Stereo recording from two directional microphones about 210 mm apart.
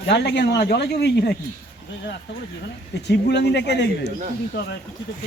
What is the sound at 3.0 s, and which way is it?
Speech, 55° left (ahead or behind).